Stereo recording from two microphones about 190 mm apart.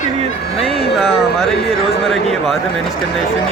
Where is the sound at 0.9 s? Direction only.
Centre (ahead or behind).